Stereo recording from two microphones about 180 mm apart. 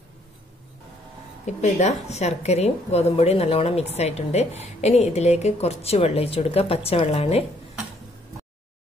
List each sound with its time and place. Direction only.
1.4 s a woman's voice: 40° left (ahead or behind)